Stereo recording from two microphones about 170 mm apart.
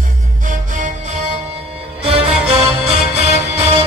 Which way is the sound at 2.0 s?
35° right (ahead or behind).